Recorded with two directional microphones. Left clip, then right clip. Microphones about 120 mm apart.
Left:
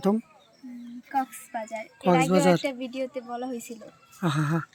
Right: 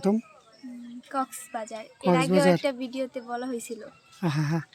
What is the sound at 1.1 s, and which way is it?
A woman's voice, 30° right (ahead or behind).